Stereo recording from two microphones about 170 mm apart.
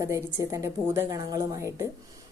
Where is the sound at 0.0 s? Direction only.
15° right (ahead or behind).